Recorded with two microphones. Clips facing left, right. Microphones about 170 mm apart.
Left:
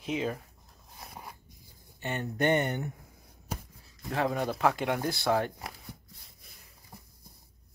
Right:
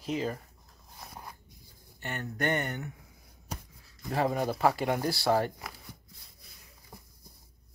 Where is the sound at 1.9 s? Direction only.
20° left (ahead or behind).